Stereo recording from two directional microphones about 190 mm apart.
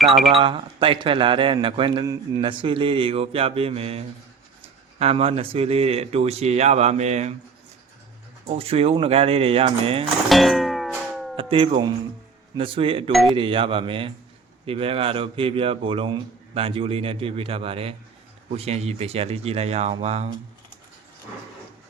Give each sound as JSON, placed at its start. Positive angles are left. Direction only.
{"t": 0.3, "sound": "speech", "side_deg": -25}
{"t": 8.4, "sound": "speech", "side_deg": -30}
{"t": 10.2, "sound": "music", "side_deg": 0}
{"t": 11.3, "sound": "speech", "side_deg": -30}